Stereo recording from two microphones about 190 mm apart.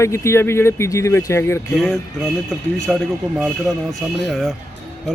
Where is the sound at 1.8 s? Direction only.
Centre (ahead or behind).